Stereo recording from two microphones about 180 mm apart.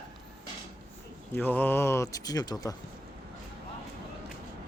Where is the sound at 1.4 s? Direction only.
10° left (ahead or behind).